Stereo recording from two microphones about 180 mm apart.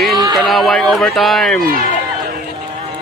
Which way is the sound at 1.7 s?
50° left (ahead or behind).